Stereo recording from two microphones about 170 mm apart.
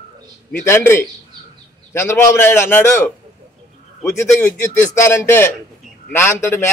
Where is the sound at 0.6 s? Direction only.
15° left (ahead or behind).